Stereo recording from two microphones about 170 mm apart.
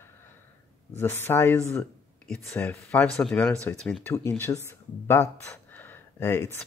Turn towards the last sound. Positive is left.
turn(degrees=15)  # may be behind; listen again after turning